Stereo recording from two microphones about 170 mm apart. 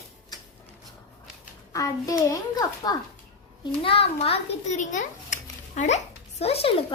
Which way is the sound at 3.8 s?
35° left (ahead or behind).